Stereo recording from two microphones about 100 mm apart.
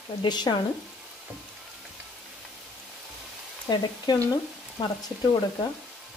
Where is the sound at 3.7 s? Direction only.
50° left (ahead or behind).